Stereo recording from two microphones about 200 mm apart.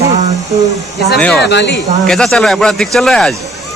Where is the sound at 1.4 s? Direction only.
60° left (ahead or behind).